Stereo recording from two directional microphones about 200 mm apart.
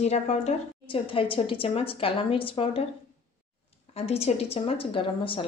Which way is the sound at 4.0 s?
30° left (ahead or behind).